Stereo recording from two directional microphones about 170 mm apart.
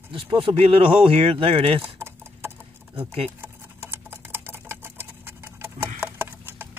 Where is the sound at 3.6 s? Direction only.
10° right (ahead or behind).